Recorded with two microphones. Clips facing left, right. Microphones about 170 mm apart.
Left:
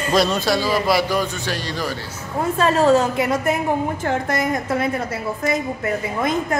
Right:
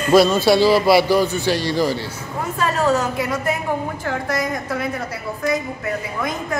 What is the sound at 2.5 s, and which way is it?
Speech, 30° left (ahead or behind).